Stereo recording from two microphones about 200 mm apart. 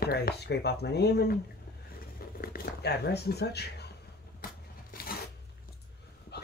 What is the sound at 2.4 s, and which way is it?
Speech, 50° left (ahead or behind).